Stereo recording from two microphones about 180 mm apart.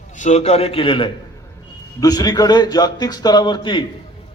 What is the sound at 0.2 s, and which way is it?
A man's voice, 40° left (ahead or behind).